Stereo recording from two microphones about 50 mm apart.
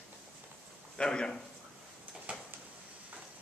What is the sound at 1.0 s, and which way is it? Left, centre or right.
Speech, centre.